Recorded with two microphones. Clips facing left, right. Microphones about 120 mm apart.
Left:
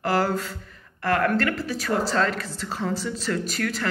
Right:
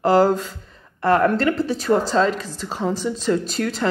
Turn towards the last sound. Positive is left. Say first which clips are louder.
# right 4 dB
turn(degrees=-25)  # may be behind; listen again after turning